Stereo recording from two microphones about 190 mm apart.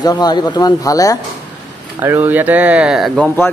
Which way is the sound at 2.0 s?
10° right (ahead or behind).